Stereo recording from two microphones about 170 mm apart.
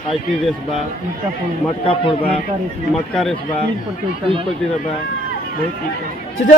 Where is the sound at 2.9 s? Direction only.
Centre (ahead or behind).